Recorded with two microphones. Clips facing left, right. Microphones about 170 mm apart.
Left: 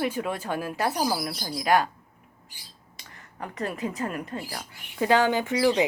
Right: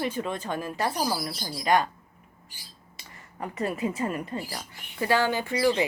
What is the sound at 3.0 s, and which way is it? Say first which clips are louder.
Speech: right 1 dB; centre (ahead or behind).